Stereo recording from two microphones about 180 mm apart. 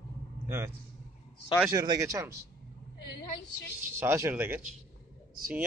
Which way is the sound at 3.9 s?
15° right (ahead or behind).